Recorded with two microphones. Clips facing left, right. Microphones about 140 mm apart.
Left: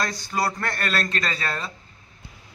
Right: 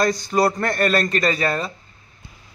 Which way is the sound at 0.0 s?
20° right (ahead or behind).